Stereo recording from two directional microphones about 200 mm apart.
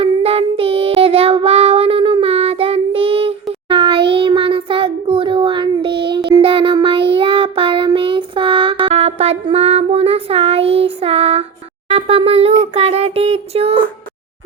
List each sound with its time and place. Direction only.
0.0 s child singing: 30° right (ahead or behind)
11.9 s a sound: 30° right (ahead or behind)
12.7 s child singing: 30° right (ahead or behind)